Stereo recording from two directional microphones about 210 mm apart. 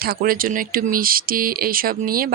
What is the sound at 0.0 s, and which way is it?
Speech, 45° right (ahead or behind).